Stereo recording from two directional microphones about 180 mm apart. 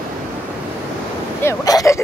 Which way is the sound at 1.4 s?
20° left (ahead or behind).